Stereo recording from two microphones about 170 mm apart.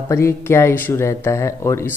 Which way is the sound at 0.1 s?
15° left (ahead or behind).